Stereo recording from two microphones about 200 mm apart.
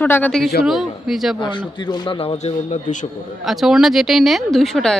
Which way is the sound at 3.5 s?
Centre (ahead or behind).